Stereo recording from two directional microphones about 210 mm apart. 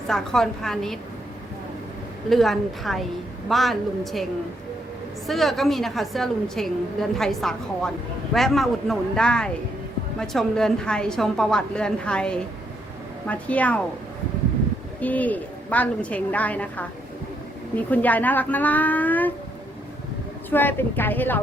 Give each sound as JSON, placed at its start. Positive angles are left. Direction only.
{"t": 0.1, "sound": "a woman's voice", "side_deg": 0}
{"t": 2.3, "sound": "a woman's voice", "side_deg": 0}
{"t": 15.0, "sound": "a woman's voice", "side_deg": 5}
{"t": 20.5, "sound": "a woman's voice", "side_deg": 10}